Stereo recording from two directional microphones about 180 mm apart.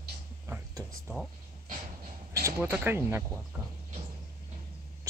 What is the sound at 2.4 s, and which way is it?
Speech, 10° right (ahead or behind).